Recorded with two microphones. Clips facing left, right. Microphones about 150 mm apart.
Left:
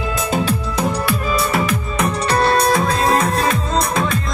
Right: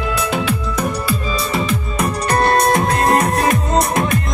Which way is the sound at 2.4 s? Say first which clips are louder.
Right 1 dB; 50° right (ahead or behind).